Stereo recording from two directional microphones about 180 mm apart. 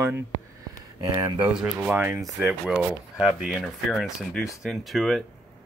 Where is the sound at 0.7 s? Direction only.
20° right (ahead or behind).